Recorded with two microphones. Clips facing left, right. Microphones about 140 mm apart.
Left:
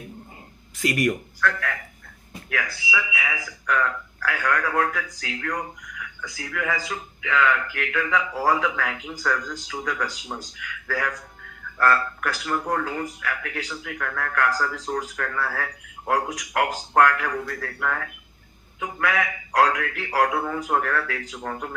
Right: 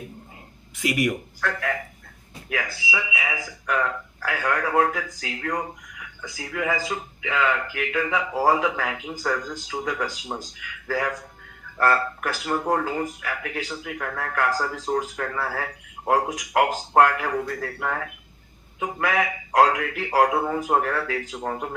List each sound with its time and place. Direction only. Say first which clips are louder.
0.8 s speech: left 1 dB; 10° right (ahead or behind)
1.4 s speech: left 1 dB; 20° right (ahead or behind)
2.9 s a man's voice: left 1 dB; 25° right (ahead or behind)